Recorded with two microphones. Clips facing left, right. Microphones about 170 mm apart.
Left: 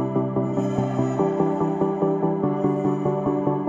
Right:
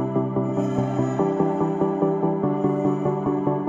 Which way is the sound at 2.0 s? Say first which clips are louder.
Even; centre (ahead or behind).